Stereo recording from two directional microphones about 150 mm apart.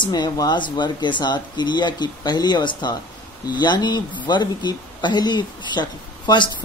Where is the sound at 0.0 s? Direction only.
25° left (ahead or behind).